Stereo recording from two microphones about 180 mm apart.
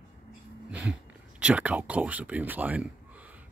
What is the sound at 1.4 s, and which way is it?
Speech, 5° right (ahead or behind).